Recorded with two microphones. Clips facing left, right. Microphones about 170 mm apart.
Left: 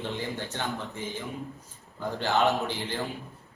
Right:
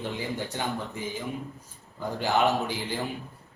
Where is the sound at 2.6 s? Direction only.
15° right (ahead or behind).